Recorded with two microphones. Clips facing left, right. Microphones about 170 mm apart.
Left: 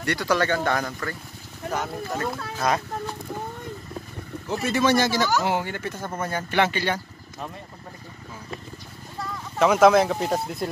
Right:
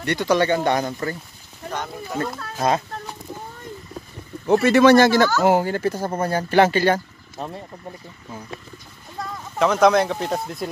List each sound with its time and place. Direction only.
0.0 s speech: 20° right (ahead or behind)
1.7 s speech: 5° left (ahead or behind)
4.5 s speech: 70° right (ahead or behind)
5.4 s speech: 40° right (ahead or behind)
9.6 s speech: 5° left (ahead or behind)